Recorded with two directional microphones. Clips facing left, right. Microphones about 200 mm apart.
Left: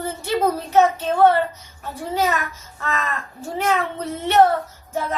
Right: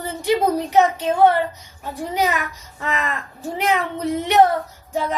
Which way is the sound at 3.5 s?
15° right (ahead or behind).